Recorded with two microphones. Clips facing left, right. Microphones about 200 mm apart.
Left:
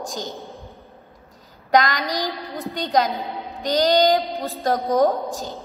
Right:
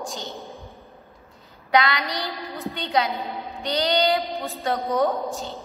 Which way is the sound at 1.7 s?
40° left (ahead or behind).